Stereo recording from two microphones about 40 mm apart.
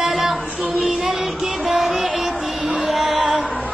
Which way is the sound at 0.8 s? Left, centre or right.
Centre.